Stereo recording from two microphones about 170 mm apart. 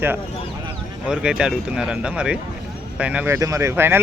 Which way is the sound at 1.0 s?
5° right (ahead or behind).